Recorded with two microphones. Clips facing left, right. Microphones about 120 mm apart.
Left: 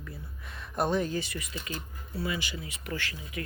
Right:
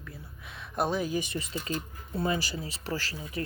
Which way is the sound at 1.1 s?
20° right (ahead or behind).